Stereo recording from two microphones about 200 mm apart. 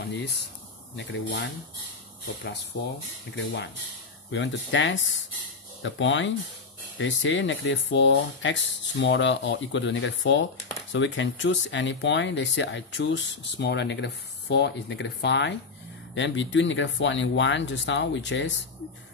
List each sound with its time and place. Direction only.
0.1 s speech: 60° left (ahead or behind)
2.7 s speech: 50° left (ahead or behind)